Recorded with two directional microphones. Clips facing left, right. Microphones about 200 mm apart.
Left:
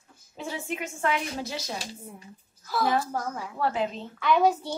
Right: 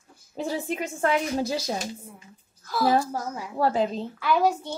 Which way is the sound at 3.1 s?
10° right (ahead or behind).